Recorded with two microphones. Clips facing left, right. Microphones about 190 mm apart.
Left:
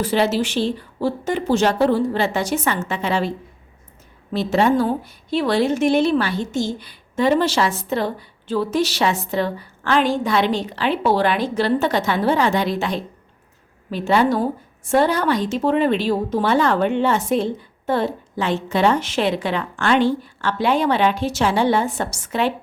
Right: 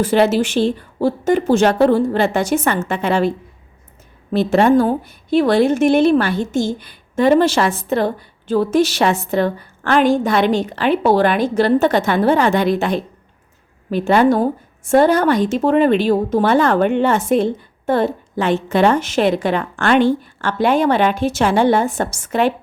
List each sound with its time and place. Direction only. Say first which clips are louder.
0.0 s a woman's voice: right 5 dB; 50° right (ahead or behind)